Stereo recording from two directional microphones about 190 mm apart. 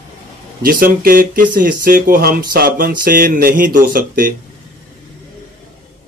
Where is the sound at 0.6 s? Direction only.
50° right (ahead or behind).